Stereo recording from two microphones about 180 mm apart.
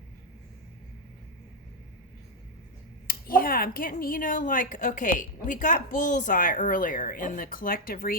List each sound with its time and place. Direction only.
3.1 s speech: 55° left (ahead or behind)